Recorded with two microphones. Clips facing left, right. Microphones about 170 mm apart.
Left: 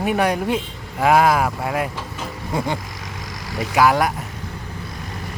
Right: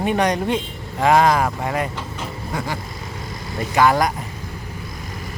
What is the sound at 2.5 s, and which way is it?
Vehicle, 20° left (ahead or behind).